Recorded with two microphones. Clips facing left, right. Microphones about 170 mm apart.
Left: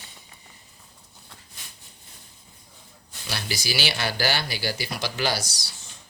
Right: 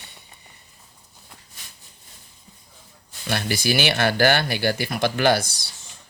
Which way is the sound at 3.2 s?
55° right (ahead or behind).